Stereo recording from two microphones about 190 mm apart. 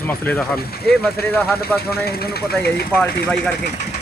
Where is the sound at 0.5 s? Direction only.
55° left (ahead or behind).